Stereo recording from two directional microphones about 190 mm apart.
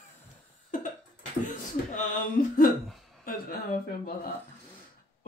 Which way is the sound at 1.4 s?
45° left (ahead or behind).